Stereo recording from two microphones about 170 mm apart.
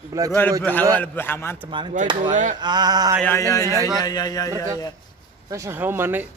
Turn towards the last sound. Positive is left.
turn(degrees=-10)  # may be behind; listen again after turning